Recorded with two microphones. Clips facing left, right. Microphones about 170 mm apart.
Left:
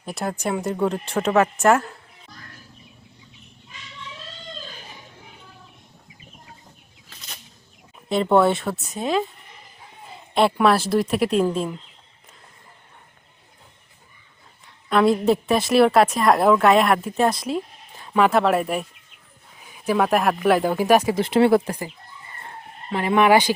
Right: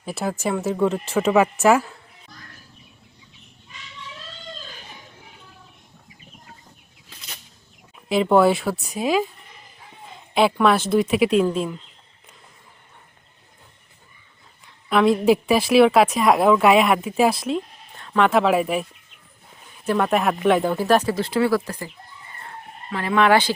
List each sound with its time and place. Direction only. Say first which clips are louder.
0.0 s a woman's voice: right 1 dB; 5° right (ahead or behind)
8.1 s a woman's voice: right 1 dB; centre (ahead or behind)
14.8 s a woman's voice: right 1 dB; centre (ahead or behind)